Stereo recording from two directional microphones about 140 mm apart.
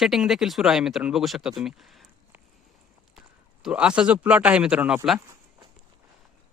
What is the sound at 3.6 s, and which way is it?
Speech, 5° right (ahead or behind).